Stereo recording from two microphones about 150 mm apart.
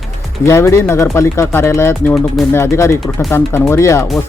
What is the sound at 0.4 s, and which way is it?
Speech, 20° left (ahead or behind).